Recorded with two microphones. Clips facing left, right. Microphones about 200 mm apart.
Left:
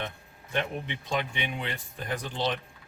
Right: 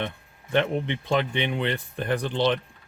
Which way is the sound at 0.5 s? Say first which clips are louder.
Right 8 dB; 70° right (ahead or behind).